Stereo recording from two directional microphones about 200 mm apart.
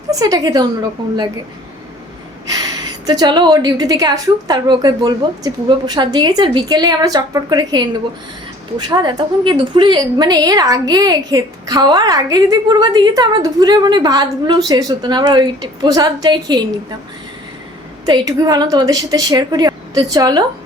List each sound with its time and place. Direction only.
0.1 s a woman's voice: 20° right (ahead or behind)
3.1 s a woman's voice: 20° right (ahead or behind)
8.9 s a woman's voice: 20° right (ahead or behind)
18.0 s a woman's voice: 20° right (ahead or behind)